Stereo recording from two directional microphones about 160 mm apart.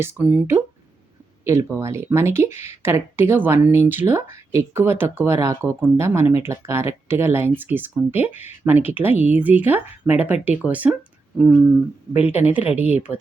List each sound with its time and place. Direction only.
0.0 s speech: 10° right (ahead or behind)
12.1 s speech: 10° right (ahead or behind)